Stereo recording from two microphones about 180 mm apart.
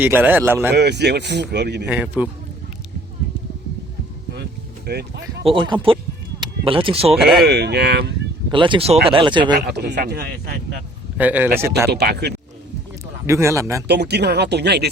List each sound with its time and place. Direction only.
0.0 s speech: 10° right (ahead or behind)
0.8 s speech: 70° right (ahead or behind)
1.9 s speech: 10° right (ahead or behind)
4.9 s speech: 65° right (ahead or behind)
5.4 s speech: 30° right (ahead or behind)
7.2 s speech: centre (ahead or behind)
7.4 s speech: 65° right (ahead or behind)
8.4 s speech: 25° right (ahead or behind)
9.6 s speech: 65° right (ahead or behind)
11.2 s speech: 10° right (ahead or behind)
11.9 s speech: 65° right (ahead or behind)
13.2 s speech: 15° right (ahead or behind)
13.8 s speech: 70° right (ahead or behind)